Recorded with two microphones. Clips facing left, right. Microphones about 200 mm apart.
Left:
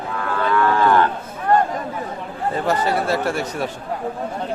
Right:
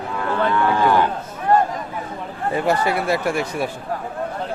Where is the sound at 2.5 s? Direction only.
15° right (ahead or behind).